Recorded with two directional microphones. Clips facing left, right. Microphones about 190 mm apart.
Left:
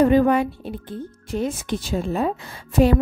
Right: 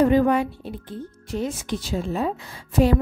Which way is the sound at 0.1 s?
60° left (ahead or behind).